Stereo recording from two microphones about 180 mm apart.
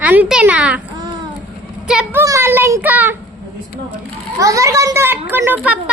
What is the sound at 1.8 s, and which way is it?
Speech, 5° right (ahead or behind).